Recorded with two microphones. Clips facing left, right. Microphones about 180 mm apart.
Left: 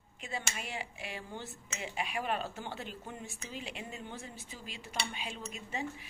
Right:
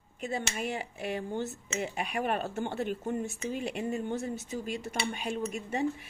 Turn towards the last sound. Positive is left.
turn(degrees=-50)  # may be behind; listen again after turning